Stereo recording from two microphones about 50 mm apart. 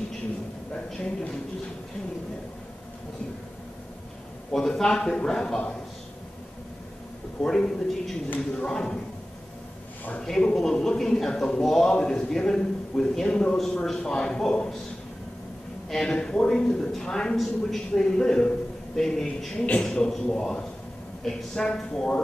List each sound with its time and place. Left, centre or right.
4.5 s a man's voice: centre
7.4 s a man's voice: centre
10.2 s a man's voice: centre
15.9 s a man's voice: centre
19.5 s a man's voice: left